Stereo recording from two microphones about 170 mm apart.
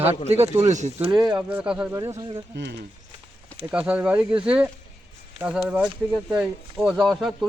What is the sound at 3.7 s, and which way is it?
Speech, 5° right (ahead or behind).